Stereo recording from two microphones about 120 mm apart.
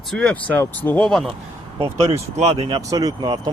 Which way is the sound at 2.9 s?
30° right (ahead or behind).